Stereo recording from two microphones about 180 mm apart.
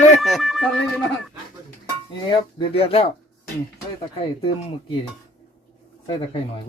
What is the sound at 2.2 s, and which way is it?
Speech, 30° left (ahead or behind).